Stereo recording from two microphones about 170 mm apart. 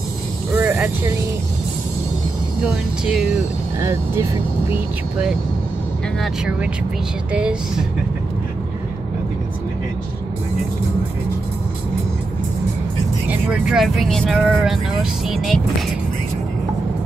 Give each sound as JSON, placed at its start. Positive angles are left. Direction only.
{"t": 0.6, "sound": "vehicle", "side_deg": -10}
{"t": 2.6, "sound": "speech", "side_deg": 0}
{"t": 3.8, "sound": "speech", "side_deg": -15}
{"t": 6.2, "sound": "speech", "side_deg": -5}
{"t": 13.3, "sound": "speech", "side_deg": -5}